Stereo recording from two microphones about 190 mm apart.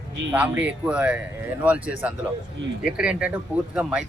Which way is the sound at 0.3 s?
10° right (ahead or behind).